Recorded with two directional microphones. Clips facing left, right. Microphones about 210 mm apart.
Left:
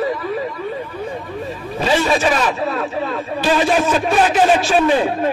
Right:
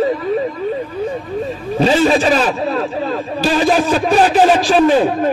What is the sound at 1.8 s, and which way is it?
A man's voice, 30° right (ahead or behind).